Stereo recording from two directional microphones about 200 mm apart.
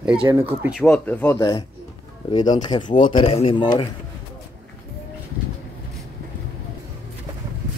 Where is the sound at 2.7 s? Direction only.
20° left (ahead or behind).